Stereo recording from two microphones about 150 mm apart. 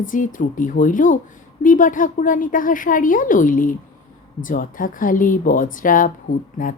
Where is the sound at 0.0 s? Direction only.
60° left (ahead or behind).